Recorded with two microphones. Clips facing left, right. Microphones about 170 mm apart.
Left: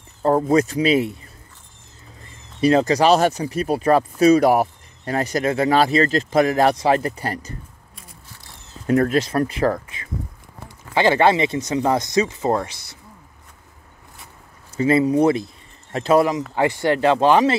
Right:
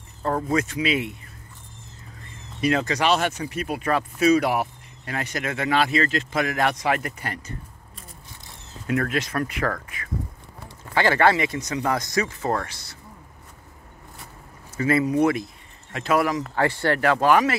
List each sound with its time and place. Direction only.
0.2 s speech: 35° left (ahead or behind)
2.6 s speech: 35° left (ahead or behind)
8.8 s speech: 35° left (ahead or behind); by 12.9 s 15° left (ahead or behind)
14.8 s speech: 25° left (ahead or behind)